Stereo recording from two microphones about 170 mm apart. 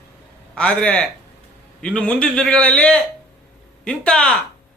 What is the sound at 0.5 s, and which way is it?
A man's voice, 5° left (ahead or behind).